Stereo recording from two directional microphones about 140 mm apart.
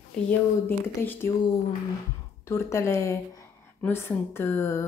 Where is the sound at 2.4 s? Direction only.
20° left (ahead or behind).